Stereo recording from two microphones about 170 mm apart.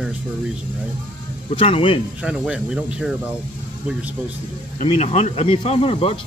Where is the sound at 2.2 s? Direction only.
5° right (ahead or behind).